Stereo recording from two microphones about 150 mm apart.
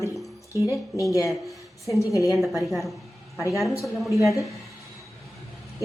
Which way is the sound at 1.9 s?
20° left (ahead or behind).